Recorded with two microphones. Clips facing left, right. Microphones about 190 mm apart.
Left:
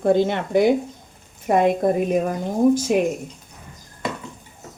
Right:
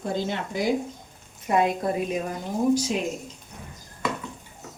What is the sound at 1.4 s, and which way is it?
A woman's voice, 50° left (ahead or behind).